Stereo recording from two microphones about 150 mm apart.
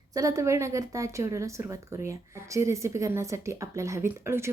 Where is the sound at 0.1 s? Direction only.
25° right (ahead or behind).